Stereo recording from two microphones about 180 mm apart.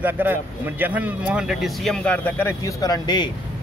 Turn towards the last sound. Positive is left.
turn(degrees=20)  # may be behind; listen again after turning